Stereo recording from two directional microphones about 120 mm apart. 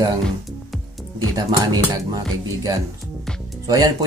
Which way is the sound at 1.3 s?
30° right (ahead or behind).